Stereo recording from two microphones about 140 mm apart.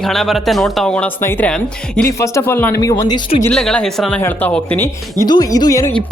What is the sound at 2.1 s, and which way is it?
Speech, 20° left (ahead or behind).